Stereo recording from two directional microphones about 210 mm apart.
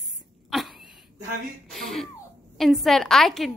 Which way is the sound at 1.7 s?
Centre (ahead or behind).